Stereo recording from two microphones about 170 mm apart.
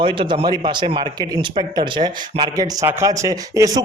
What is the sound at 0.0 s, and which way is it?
A man's voice, 30° right (ahead or behind).